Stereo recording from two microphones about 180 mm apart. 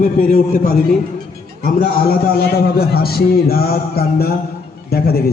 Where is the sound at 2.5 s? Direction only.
60° left (ahead or behind).